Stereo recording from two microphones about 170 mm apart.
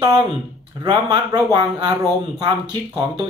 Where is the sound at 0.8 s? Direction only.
25° right (ahead or behind).